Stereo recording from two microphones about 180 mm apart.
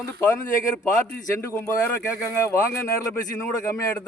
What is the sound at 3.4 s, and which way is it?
Speech, 15° left (ahead or behind).